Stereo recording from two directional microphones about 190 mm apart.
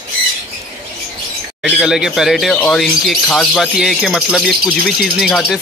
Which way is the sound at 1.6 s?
5° right (ahead or behind).